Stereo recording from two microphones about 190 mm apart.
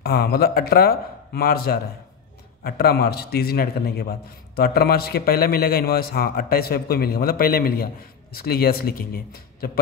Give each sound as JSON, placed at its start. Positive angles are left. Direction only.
{"t": 0.0, "sound": "a man's voice", "side_deg": 55}